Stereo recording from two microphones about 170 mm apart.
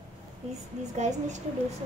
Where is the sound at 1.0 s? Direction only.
45° right (ahead or behind).